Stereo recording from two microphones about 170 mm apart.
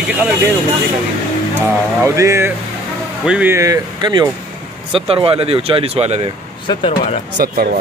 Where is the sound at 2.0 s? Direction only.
15° right (ahead or behind); by 6.2 s 40° right (ahead or behind).